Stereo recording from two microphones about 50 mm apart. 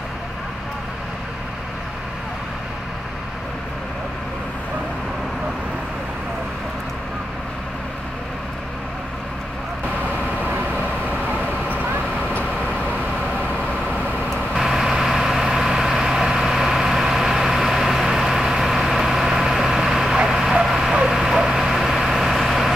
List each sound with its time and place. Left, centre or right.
10.8 s vehicle: right
12.3 s vehicle: left
14.5 s vehicle: centre